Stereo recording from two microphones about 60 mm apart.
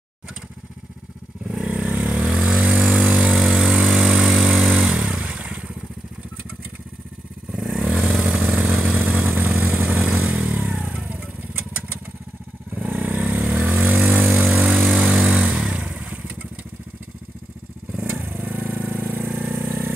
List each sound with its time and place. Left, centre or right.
1.5 s vehicle: centre
2.6 s a sound: centre
3.2 s vehicle: centre
4.9 s vehicle: centre
7.5 s vehicle: centre; by 10.0 s right
10.2 s motorcycle: right
12.7 s vehicle: right
15.0 s motorcycle: centre
18.2 s vehicle: right